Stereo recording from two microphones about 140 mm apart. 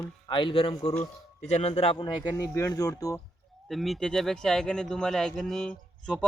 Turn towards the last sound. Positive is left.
turn(degrees=5)  # may be behind; listen again after turning